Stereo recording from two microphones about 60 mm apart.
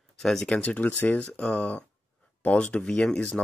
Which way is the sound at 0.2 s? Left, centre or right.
Centre.